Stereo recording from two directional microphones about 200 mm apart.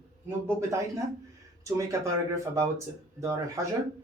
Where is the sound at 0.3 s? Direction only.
15° right (ahead or behind).